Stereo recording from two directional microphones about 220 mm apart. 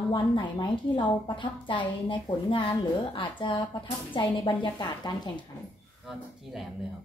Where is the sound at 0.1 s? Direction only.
20° left (ahead or behind).